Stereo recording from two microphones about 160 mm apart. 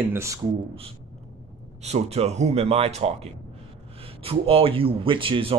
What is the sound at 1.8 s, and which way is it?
Speech, 40° right (ahead or behind).